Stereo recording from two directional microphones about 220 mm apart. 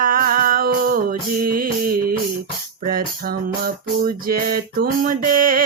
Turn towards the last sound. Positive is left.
turn(degrees=-40)  # may be behind; listen again after turning